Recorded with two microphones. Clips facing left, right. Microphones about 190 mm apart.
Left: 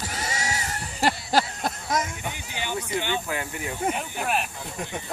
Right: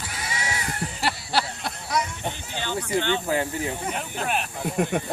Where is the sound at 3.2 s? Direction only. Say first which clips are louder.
Right 6 dB; 30° right (ahead or behind).